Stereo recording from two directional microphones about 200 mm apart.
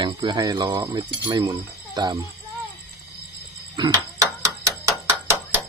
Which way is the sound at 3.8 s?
15° right (ahead or behind).